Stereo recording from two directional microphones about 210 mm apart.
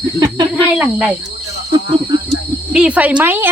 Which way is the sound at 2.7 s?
5° right (ahead or behind).